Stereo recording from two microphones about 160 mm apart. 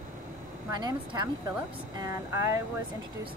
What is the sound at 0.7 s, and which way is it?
A woman's voice, 25° right (ahead or behind).